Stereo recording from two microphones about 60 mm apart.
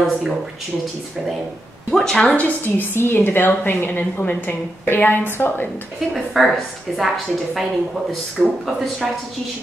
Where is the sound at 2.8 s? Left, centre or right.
Left.